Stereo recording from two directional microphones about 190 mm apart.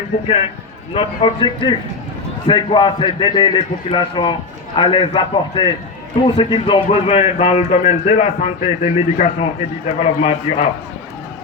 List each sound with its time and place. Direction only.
0.9 s a man's voice: 25° left (ahead or behind)